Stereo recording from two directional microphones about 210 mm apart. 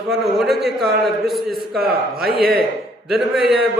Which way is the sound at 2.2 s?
45° right (ahead or behind).